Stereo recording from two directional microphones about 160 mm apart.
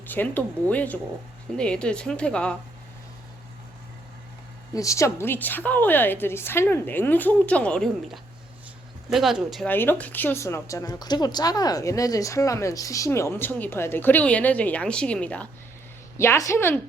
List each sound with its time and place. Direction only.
0.0 s a woman's voice: 10° left (ahead or behind)
4.7 s a woman's voice: 20° left (ahead or behind); by 9.6 s centre (ahead or behind)
9.6 s a woman's voice: 10° left (ahead or behind)